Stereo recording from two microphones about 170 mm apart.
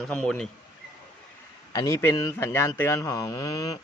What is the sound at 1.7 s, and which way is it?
A man's voice, 20° left (ahead or behind).